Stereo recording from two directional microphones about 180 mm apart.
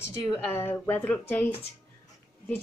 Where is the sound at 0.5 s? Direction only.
10° left (ahead or behind).